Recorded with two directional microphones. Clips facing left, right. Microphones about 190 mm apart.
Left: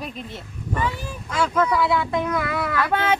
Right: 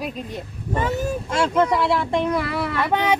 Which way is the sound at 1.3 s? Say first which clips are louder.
Right 1 dB; 25° right (ahead or behind).